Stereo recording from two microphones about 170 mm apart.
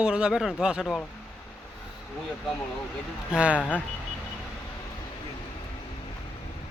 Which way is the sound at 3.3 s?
5° right (ahead or behind).